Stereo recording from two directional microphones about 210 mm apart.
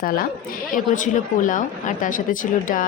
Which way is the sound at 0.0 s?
45° left (ahead or behind).